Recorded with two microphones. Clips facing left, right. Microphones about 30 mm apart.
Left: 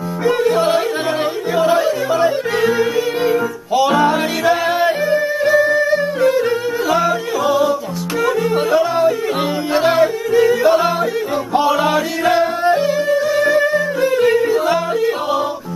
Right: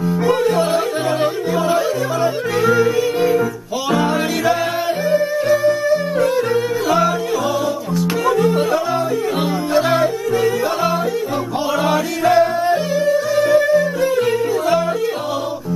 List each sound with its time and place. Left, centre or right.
0.2 s yodeling: centre
0.6 s yodeling: centre
4.0 s music: centre
6.2 s yodeling: centre
11.8 s yodeling: centre
13.0 s music: centre